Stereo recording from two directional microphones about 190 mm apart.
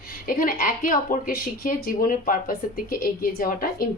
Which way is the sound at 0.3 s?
50° left (ahead or behind).